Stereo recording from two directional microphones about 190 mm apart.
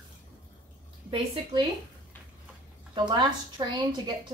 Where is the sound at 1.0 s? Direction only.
25° right (ahead or behind).